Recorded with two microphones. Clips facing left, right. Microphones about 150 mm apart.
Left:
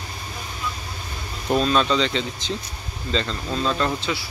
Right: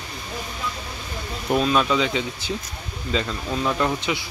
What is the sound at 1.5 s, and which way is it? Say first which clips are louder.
Speech: even; 10° right (ahead or behind).